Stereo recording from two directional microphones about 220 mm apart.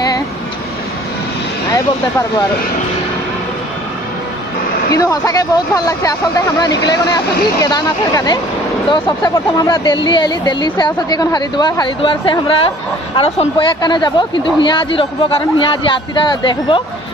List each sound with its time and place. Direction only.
4.9 s speech: 15° left (ahead or behind)